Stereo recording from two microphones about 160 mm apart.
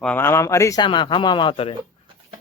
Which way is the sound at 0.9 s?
30° left (ahead or behind).